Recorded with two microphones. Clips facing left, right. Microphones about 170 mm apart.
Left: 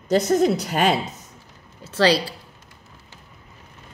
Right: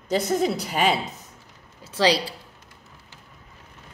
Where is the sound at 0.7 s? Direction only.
45° left (ahead or behind).